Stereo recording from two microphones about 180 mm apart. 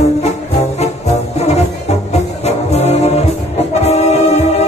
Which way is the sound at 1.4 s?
35° left (ahead or behind).